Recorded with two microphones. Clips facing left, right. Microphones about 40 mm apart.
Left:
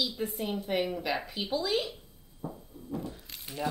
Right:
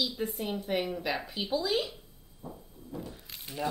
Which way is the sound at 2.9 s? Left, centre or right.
Centre.